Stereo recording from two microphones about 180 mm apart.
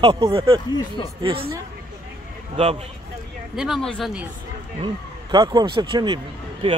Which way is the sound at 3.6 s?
Centre (ahead or behind).